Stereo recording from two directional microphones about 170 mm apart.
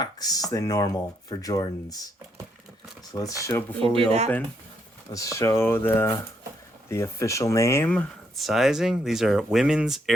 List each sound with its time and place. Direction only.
0.0 s speech: 20° left (ahead or behind)
3.1 s speech: 20° left (ahead or behind)
5.1 s speech: 20° left (ahead or behind); by 10.0 s centre (ahead or behind)